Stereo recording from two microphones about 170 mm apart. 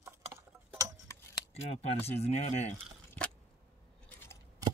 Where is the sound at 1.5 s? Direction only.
35° left (ahead or behind).